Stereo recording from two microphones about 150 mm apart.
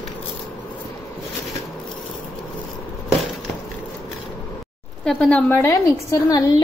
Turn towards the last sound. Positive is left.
turn(degrees=20)  # may be behind; listen again after turning